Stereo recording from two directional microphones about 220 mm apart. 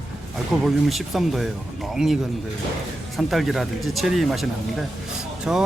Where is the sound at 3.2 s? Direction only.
Centre (ahead or behind).